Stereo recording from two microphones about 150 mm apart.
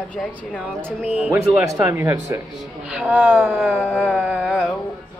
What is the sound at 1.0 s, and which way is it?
Speech, 40° left (ahead or behind).